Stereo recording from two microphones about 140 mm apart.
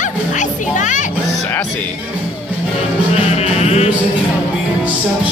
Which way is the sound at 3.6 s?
50° left (ahead or behind).